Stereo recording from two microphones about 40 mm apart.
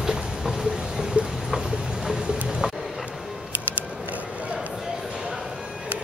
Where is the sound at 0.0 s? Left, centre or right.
Centre.